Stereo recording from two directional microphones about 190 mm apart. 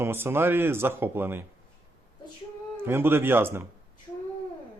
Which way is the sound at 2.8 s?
10° right (ahead or behind).